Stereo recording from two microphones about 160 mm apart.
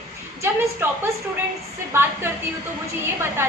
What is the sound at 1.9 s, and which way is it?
Speech, 15° right (ahead or behind).